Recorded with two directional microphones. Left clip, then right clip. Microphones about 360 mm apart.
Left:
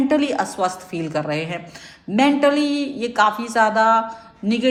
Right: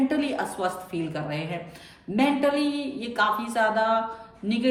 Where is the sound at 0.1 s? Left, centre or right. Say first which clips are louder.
Left 8 dB; centre.